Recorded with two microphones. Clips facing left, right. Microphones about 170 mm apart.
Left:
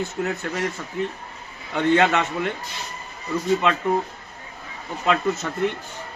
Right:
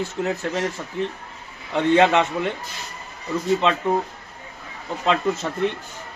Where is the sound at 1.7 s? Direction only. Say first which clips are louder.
Right 2 dB; 25° right (ahead or behind).